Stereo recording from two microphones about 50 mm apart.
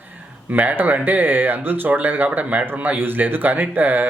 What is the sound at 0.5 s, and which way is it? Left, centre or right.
Speech, right.